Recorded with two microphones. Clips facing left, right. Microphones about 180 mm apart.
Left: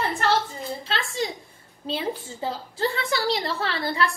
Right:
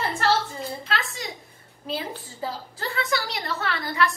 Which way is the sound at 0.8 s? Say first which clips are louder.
Left 3 dB; 30° left (ahead or behind).